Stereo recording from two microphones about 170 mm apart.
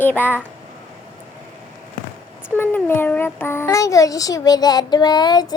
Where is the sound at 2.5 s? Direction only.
10° left (ahead or behind).